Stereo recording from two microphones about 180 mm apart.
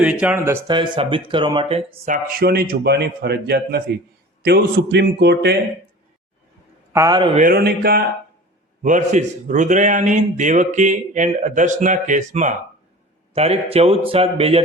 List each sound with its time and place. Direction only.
0.0 s speech: 5° right (ahead or behind)
1.0 s a man's voice: 30° right (ahead or behind)
2.0 s a man's voice: 50° right (ahead or behind); by 5.5 s 70° right (ahead or behind)
6.9 s speech: 20° right (ahead or behind)
7.3 s a man's voice: 50° right (ahead or behind)
8.8 s a man's voice: 45° right (ahead or behind)